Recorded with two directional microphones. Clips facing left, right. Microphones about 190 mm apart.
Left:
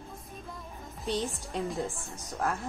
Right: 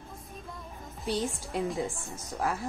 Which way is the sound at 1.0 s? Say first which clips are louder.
Right 1 dB; centre (ahead or behind).